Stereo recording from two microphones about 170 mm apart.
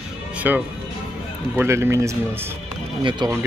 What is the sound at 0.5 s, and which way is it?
Speech, 10° right (ahead or behind).